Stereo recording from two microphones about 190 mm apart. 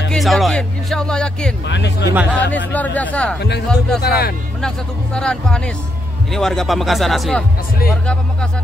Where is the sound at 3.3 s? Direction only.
60° left (ahead or behind).